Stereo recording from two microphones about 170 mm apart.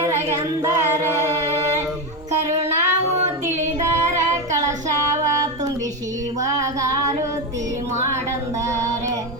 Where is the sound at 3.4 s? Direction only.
15° right (ahead or behind).